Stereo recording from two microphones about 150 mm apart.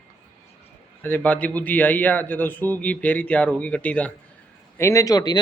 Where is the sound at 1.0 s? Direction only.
10° left (ahead or behind).